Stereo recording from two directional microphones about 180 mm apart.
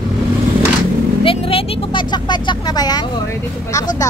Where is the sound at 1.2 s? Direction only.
30° left (ahead or behind).